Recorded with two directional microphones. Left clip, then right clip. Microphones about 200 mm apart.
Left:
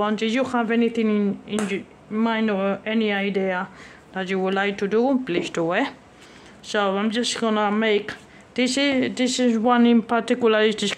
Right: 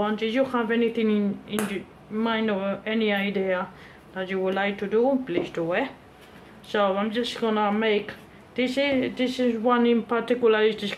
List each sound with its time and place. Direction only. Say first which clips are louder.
0.0 s speech: left 2 dB; 50° left (ahead or behind)
4.1 s speech: left 3 dB; 55° left (ahead or behind)